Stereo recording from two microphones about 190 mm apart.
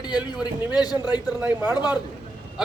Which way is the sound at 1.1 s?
10° right (ahead or behind).